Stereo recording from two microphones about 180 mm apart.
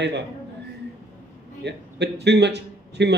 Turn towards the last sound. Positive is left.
turn(degrees=-70)  # may be behind; listen again after turning